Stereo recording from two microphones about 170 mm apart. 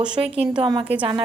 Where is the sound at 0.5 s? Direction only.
30° right (ahead or behind).